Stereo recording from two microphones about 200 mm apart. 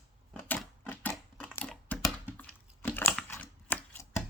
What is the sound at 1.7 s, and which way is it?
Typing, centre (ahead or behind).